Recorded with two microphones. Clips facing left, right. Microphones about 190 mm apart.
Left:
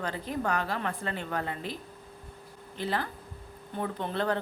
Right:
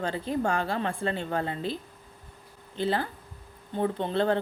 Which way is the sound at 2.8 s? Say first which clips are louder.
Right 4 dB; 30° right (ahead or behind).